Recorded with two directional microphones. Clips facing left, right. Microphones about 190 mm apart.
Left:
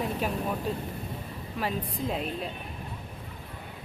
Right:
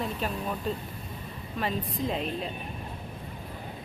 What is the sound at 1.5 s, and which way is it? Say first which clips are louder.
Speech: right 1 dB; 5° left (ahead or behind).